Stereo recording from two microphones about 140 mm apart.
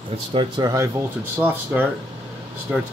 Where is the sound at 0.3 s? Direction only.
35° right (ahead or behind).